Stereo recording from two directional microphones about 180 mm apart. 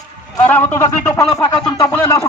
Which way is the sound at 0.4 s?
10° left (ahead or behind).